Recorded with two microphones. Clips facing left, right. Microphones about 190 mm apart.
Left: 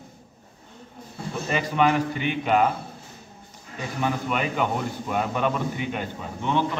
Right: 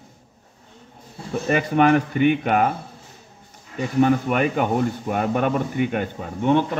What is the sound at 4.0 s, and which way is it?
A man's voice, 50° right (ahead or behind).